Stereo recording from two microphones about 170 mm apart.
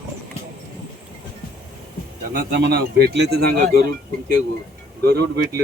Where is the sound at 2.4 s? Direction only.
65° right (ahead or behind).